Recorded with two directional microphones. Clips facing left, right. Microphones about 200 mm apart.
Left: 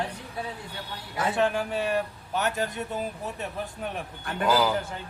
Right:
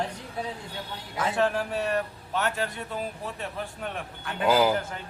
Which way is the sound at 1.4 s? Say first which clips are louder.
Even; 10° left (ahead or behind).